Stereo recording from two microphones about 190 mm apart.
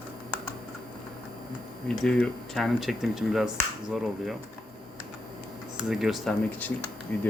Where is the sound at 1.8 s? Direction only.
5° left (ahead or behind).